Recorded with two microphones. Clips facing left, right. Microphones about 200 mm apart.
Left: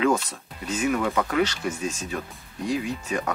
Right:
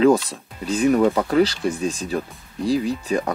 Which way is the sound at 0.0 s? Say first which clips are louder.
Right 7 dB; 35° right (ahead or behind).